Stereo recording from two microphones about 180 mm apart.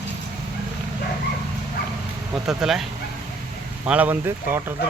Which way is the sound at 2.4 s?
Centre (ahead or behind).